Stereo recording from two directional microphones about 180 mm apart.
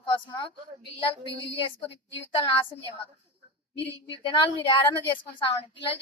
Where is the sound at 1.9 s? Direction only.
80° left.